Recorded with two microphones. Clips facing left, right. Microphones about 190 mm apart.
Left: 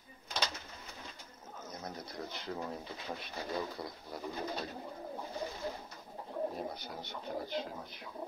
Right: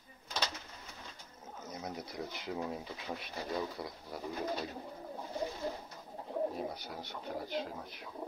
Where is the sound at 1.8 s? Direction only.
10° right (ahead or behind).